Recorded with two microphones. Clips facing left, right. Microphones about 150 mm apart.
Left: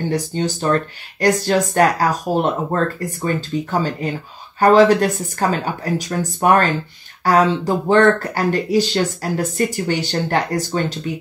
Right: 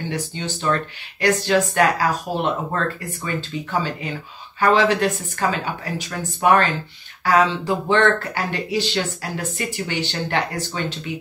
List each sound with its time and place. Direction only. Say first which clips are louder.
0.1 s speech: left 7 dB; 45° left (ahead or behind)